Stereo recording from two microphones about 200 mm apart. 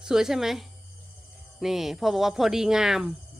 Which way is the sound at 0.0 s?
5° right (ahead or behind).